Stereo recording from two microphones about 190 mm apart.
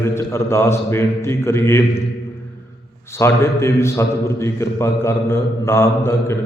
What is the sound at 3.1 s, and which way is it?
A man's voice, 15° left (ahead or behind).